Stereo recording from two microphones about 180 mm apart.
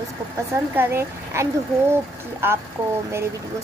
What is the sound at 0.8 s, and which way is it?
Speech, 15° right (ahead or behind).